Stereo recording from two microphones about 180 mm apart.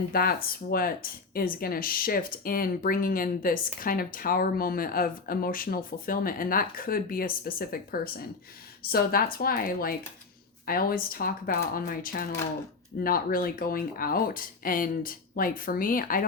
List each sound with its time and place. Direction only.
0.1 s a woman's voice: 55° left (ahead or behind)